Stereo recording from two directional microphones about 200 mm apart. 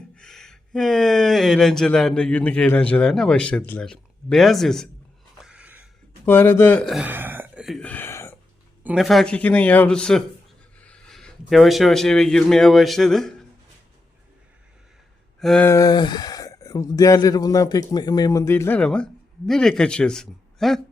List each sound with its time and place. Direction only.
0.2 s speech: 5° left (ahead or behind)
5.4 s a sound: 5° right (ahead or behind)
6.2 s speech: 10° left (ahead or behind)
8.8 s a man's voice: 5° right (ahead or behind)
15.4 s speech: 5° left (ahead or behind)
15.7 s speech: 20° left (ahead or behind); by 20.8 s centre (ahead or behind)